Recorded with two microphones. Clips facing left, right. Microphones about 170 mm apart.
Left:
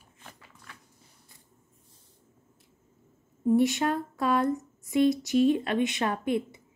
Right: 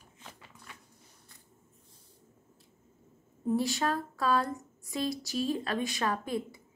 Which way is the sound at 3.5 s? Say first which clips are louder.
Left 6 dB; 20° left (ahead or behind).